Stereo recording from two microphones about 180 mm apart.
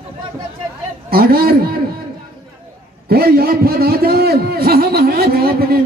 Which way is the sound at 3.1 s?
60° right (ahead or behind).